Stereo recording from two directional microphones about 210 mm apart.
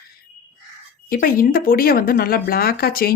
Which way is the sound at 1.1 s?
40° left (ahead or behind).